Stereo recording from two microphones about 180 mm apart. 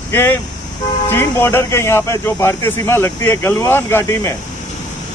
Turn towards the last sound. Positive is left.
turn(degrees=15)  # may be behind; listen again after turning